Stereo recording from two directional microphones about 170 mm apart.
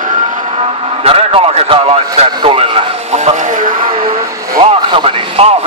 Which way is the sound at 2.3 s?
30° right (ahead or behind).